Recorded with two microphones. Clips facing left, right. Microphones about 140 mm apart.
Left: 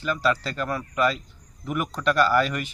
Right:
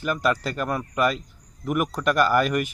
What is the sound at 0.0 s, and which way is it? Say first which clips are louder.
Speech: right 1 dB; 10° right (ahead or behind).